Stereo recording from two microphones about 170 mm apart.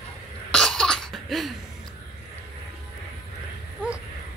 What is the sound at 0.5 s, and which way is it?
Cough, 5° left (ahead or behind).